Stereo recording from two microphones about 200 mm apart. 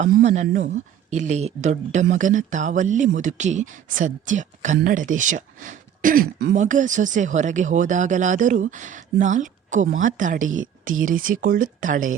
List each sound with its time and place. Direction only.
0.2 s speech: 35° right (ahead or behind)
6.6 s speech: 40° right (ahead or behind)